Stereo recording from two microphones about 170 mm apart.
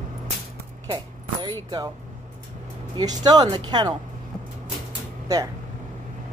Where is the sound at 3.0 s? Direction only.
25° right (ahead or behind).